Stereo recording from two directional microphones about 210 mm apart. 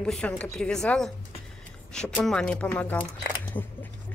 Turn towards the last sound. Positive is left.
turn(degrees=5)  # may be behind; listen again after turning